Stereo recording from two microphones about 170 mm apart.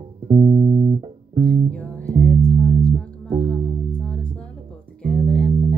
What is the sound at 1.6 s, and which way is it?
Music, 5° left (ahead or behind).